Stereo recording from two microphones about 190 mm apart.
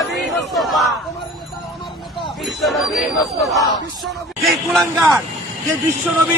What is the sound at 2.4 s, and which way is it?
Speech, centre (ahead or behind).